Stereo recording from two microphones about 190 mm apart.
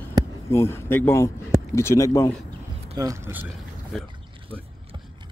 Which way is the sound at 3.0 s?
15° right (ahead or behind).